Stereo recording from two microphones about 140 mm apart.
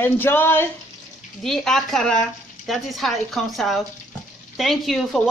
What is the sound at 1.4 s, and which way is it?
Speech, 5° left (ahead or behind).